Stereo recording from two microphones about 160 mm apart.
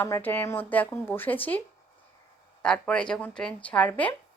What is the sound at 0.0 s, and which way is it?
Speech, 15° left (ahead or behind).